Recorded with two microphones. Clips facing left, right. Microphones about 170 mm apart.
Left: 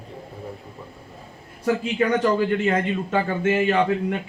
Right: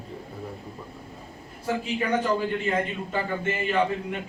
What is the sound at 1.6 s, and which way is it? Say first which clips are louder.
A man's voice: left 6 dB; 90° left.